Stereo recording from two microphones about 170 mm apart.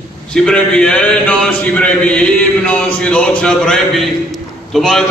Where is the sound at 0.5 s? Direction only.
5° left (ahead or behind).